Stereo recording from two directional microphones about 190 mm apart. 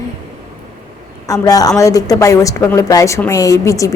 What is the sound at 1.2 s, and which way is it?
A woman's voice, 15° left (ahead or behind).